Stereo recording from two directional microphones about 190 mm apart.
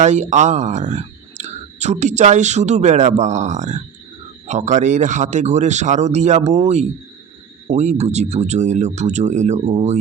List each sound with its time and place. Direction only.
0.0 s speech: 40° right (ahead or behind)
7.8 s speech: 35° right (ahead or behind)